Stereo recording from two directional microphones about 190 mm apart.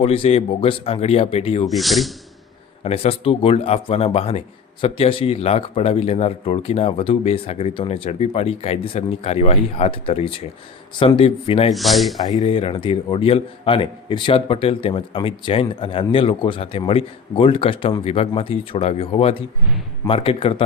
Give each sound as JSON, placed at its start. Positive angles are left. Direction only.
{"t": 0.0, "sound": "speech", "side_deg": 30}
{"t": 1.6, "sound": "speech", "side_deg": 0}
{"t": 2.8, "sound": "a man's voice", "side_deg": 30}
{"t": 11.7, "sound": "speech", "side_deg": 0}
{"t": 12.4, "sound": "a man's voice", "side_deg": 30}